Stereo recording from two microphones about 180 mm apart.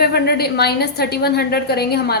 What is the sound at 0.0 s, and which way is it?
A woman's voice, 60° left (ahead or behind).